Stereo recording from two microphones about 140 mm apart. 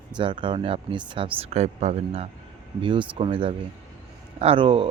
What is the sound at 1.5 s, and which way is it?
Speech, 50° right (ahead or behind).